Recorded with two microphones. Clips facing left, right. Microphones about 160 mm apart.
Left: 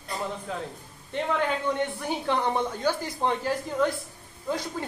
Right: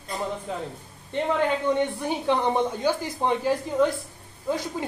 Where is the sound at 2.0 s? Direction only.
15° right (ahead or behind).